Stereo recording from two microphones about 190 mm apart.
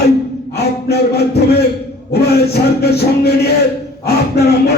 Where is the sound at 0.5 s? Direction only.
60° left (ahead or behind).